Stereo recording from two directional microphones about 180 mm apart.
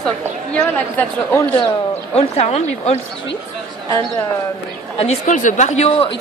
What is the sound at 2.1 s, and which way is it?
Speech, 35° left (ahead or behind).